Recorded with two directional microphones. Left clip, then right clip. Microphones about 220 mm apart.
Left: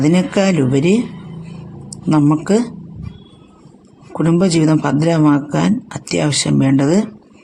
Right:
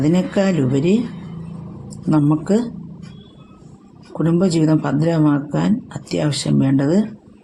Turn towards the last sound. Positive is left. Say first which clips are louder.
# left 3 dB
turn(degrees=20)  # may be behind; listen again after turning